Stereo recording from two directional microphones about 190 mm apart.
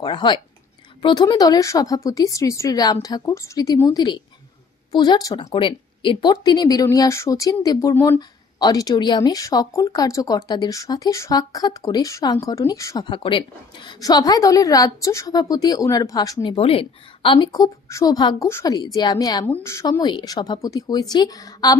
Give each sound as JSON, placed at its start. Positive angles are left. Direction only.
{"t": 0.0, "sound": "speech", "side_deg": 25}
{"t": 16.5, "sound": "speech", "side_deg": 30}